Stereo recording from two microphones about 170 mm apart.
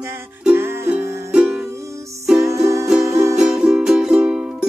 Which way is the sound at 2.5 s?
20° right (ahead or behind).